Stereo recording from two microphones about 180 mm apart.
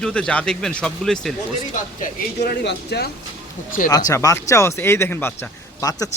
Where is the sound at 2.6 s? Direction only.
70° left (ahead or behind).